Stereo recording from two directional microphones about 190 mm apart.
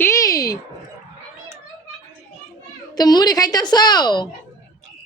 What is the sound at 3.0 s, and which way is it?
A woman's voice, 20° left (ahead or behind).